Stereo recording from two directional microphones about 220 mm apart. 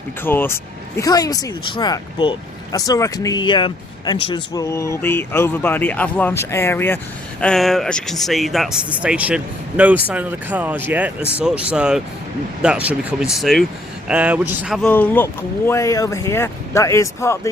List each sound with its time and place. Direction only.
0.3 s speech: 10° left (ahead or behind)